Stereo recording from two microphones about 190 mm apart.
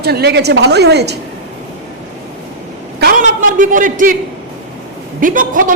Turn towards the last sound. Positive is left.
turn(degrees=-45)  # may be behind; listen again after turning